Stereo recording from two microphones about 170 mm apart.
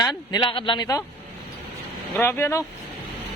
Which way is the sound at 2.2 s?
15° left (ahead or behind).